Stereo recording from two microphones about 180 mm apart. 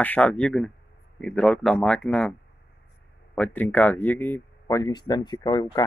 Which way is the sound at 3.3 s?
10° left (ahead or behind).